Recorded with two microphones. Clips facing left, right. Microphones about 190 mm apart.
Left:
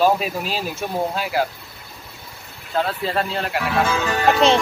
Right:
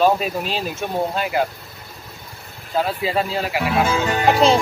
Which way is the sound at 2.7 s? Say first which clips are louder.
Right 1 dB; 5° right (ahead or behind).